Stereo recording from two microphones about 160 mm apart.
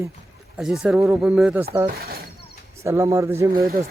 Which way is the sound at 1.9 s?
70° right (ahead or behind).